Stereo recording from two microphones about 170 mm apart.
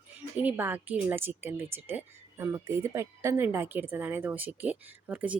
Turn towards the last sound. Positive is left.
turn(degrees=-10)  # may be behind; listen again after turning